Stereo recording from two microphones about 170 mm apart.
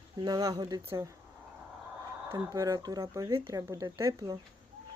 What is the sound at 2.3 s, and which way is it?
Speech, 20° right (ahead or behind).